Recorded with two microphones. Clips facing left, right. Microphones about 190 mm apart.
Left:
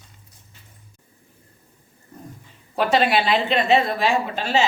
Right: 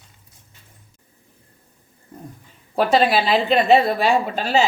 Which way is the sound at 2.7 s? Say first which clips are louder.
Right 2 dB; 35° right (ahead or behind).